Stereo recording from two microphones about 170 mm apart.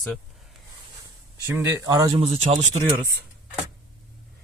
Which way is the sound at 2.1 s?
40° right (ahead or behind).